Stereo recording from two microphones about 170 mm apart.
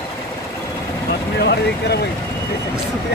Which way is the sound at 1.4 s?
70° left (ahead or behind).